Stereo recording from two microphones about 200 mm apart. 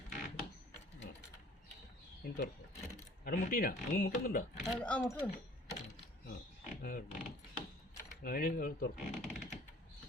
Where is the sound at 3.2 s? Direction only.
45° left (ahead or behind).